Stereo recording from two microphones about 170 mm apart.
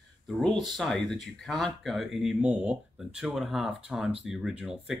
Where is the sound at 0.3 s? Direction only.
5° left (ahead or behind).